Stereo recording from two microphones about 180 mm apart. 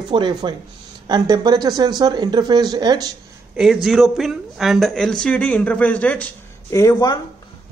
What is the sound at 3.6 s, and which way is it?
Speech, centre (ahead or behind).